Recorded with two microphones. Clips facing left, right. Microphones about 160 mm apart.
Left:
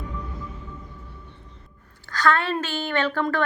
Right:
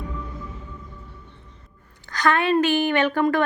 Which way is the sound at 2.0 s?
20° right (ahead or behind).